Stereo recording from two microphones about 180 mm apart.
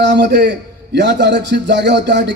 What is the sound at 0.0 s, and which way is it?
A man's voice, 70° right (ahead or behind).